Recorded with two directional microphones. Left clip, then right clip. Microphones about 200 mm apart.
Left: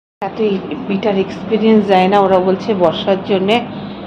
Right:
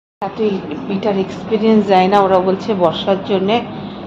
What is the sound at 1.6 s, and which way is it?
A woman's voice, centre (ahead or behind).